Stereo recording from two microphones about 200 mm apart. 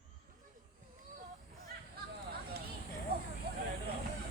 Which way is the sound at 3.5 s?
50° right (ahead or behind).